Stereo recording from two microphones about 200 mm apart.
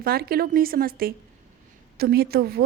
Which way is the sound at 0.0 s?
50° right (ahead or behind).